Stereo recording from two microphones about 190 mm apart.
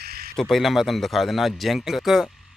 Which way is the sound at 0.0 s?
55° right (ahead or behind).